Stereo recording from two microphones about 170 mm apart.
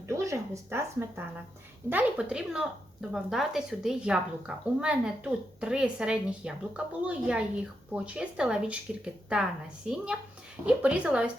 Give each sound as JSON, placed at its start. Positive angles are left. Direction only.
{"t": 0.1, "sound": "a woman's voice", "side_deg": -15}